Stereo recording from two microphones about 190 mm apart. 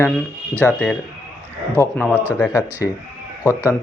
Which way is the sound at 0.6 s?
5° left (ahead or behind).